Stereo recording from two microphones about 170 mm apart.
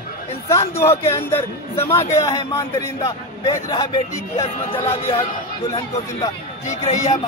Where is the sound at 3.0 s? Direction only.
25° left (ahead or behind).